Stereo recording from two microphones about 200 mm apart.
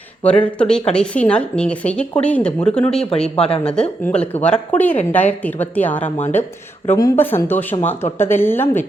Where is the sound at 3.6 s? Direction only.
5° left (ahead or behind).